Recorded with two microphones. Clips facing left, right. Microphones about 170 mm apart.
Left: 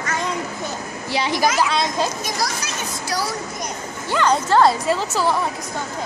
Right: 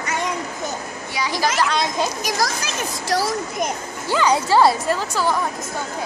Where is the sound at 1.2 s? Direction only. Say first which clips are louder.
Left 3 dB; 20° left (ahead or behind).